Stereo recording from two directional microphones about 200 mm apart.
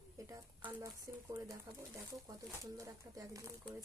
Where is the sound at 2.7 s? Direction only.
15° right (ahead or behind).